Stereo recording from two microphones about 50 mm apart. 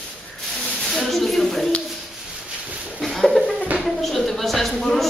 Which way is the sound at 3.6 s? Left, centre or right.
Right.